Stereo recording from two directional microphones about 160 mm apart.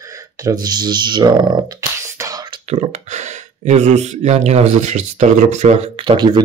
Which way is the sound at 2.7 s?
45° right (ahead or behind).